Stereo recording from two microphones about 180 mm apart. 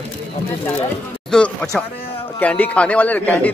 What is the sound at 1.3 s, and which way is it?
A man's voice, 5° left (ahead or behind).